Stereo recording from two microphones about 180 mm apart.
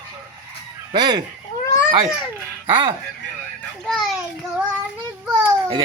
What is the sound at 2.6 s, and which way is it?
Speech, 25° right (ahead or behind).